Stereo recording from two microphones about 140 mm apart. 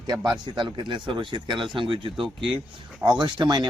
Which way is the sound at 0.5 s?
35° right (ahead or behind).